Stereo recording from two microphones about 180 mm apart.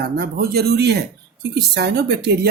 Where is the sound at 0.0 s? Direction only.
60° right (ahead or behind).